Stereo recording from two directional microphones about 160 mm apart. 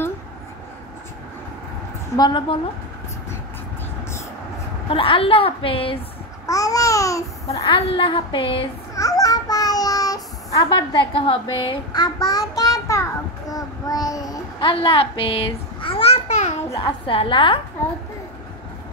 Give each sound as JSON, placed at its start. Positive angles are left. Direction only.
{"t": 2.1, "sound": "babbling", "side_deg": 25}
{"t": 4.8, "sound": "a woman's voice", "side_deg": 35}
{"t": 6.4, "sound": "babbling", "side_deg": 20}
{"t": 7.7, "sound": "a woman's voice", "side_deg": 35}
{"t": 8.9, "sound": "child singing", "side_deg": 20}
{"t": 14.7, "sound": "babbling", "side_deg": 35}
{"t": 16.8, "sound": "a woman's voice", "side_deg": 35}